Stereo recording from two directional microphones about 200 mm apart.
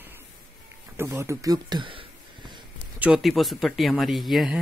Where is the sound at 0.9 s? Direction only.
15° right (ahead or behind).